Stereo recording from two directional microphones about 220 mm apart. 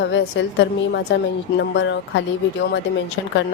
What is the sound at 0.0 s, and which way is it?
A woman's voice, 55° left (ahead or behind).